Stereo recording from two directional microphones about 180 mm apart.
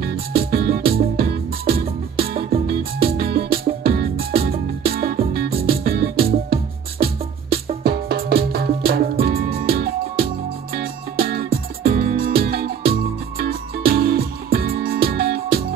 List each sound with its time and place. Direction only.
0.5 s music: 55° right (ahead or behind)